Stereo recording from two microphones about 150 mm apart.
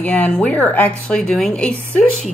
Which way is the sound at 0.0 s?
10° left (ahead or behind).